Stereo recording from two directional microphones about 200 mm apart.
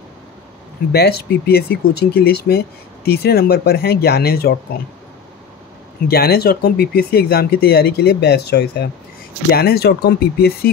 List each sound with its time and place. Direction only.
0.9 s speech: 50° left (ahead or behind)
6.0 s speech: 50° left (ahead or behind)